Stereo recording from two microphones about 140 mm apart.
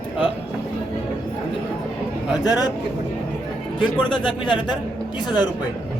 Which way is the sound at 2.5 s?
25° left (ahead or behind).